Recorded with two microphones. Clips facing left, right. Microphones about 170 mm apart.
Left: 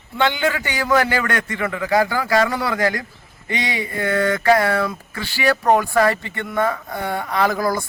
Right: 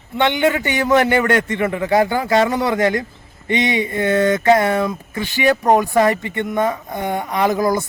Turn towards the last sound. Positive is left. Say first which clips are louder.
# right 3 dB
turn(degrees=-20)  # may be behind; listen again after turning